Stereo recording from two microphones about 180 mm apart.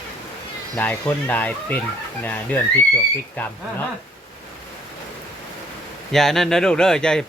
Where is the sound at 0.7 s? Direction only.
10° left (ahead or behind).